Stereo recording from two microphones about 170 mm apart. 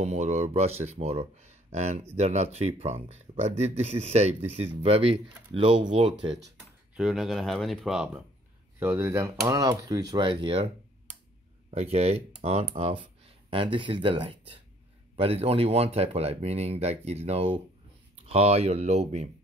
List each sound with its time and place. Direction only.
0.0 s speech: 40° right (ahead or behind)
7.0 s speech: centre (ahead or behind)
8.7 s speech: 15° right (ahead or behind); by 10.7 s 30° right (ahead or behind)
11.7 s speech: 40° right (ahead or behind)